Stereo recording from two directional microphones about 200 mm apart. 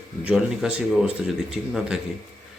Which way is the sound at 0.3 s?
5° right (ahead or behind).